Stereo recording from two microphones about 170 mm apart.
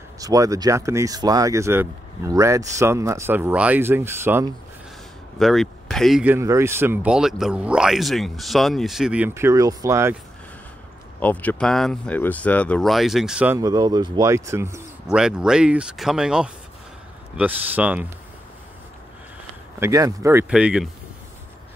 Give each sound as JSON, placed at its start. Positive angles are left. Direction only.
{"t": 0.2, "sound": "speech", "side_deg": -20}
{"t": 5.4, "sound": "speech", "side_deg": 0}
{"t": 6.3, "sound": "speech", "side_deg": -15}
{"t": 11.1, "sound": "speech", "side_deg": 10}
{"t": 13.6, "sound": "speech", "side_deg": -20}
{"t": 15.0, "sound": "speech", "side_deg": -5}
{"t": 19.8, "sound": "speech", "side_deg": -20}